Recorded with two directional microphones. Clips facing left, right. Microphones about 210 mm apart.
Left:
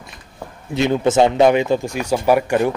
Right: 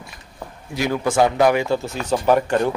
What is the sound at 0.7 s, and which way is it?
Speech, 25° left (ahead or behind).